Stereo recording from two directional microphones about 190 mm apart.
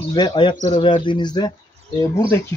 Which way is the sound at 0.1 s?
25° left (ahead or behind).